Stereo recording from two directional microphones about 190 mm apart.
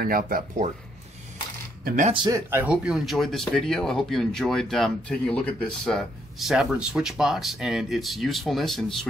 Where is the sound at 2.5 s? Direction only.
10° right (ahead or behind).